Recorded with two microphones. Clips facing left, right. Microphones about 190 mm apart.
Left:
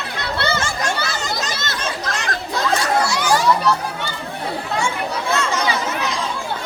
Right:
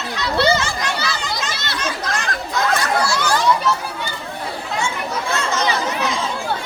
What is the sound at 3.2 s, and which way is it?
Children playing, 10° left (ahead or behind).